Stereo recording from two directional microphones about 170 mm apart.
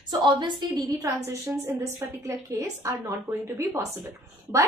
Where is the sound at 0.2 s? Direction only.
25° right (ahead or behind).